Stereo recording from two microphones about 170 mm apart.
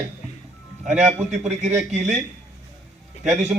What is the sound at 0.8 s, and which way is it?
Speech, 5° right (ahead or behind).